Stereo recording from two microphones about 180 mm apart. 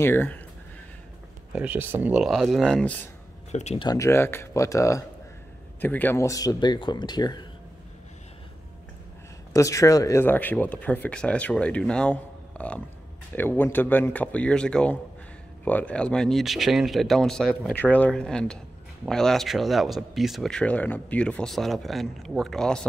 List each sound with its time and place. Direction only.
0.0 s speech: 10° left (ahead or behind)
1.5 s speech: 5° right (ahead or behind)
3.5 s speech: 35° left (ahead or behind)
3.8 s speech: 20° left (ahead or behind)
9.5 s speech: 15° left (ahead or behind); by 22.8 s centre (ahead or behind)